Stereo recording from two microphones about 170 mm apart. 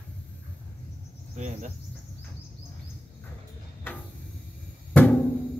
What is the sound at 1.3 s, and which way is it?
Insect, 45° right (ahead or behind).